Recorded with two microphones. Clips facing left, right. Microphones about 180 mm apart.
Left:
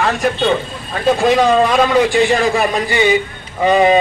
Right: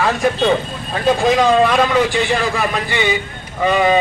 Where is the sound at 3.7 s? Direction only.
25° left (ahead or behind).